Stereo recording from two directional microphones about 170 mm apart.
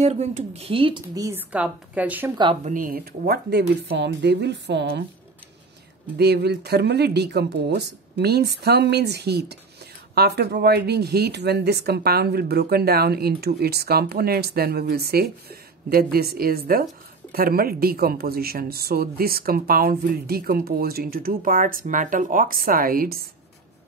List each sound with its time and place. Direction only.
0.0 s speech: 40° right (ahead or behind); by 2.3 s 10° right (ahead or behind)
2.6 s speech: 50° right (ahead or behind); by 3.6 s 70° right (ahead or behind)
3.9 s a woman's voice: 85° right
6.1 s speech: 75° right (ahead or behind)